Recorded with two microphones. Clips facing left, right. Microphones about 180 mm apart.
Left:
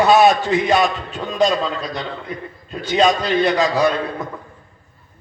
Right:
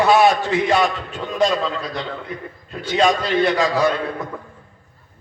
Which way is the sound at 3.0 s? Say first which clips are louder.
Left 1 dB; 20° left (ahead or behind).